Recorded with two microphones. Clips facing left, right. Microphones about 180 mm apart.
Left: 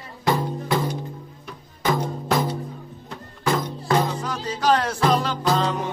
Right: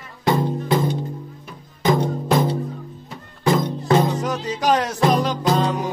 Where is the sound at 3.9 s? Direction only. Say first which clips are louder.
Right 4 dB; 20° right (ahead or behind).